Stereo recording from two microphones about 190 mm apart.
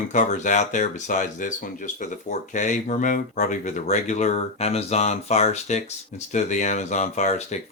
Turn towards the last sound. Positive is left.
turn(degrees=40)  # may be behind; listen again after turning